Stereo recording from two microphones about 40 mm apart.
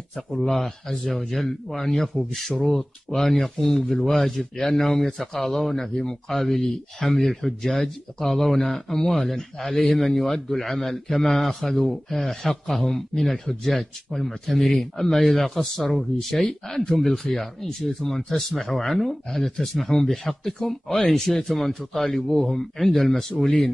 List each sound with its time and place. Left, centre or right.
0.4 s a man's voice: centre
11.6 s a man's voice: centre
11.9 s a man's voice: centre